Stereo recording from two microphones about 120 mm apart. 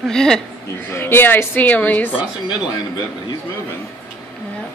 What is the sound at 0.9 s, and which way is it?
A woman's voice, 20° left (ahead or behind).